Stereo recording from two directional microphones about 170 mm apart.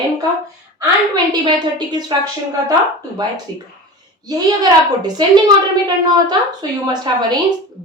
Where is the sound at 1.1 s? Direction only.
25° right (ahead or behind).